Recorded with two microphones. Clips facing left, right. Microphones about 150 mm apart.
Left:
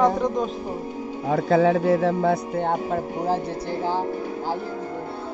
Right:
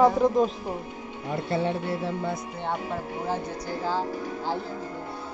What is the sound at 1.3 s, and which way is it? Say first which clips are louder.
Speech: left 9 dB; 90° left.